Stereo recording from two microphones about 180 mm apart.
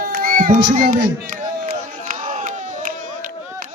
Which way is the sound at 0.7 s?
50° right (ahead or behind).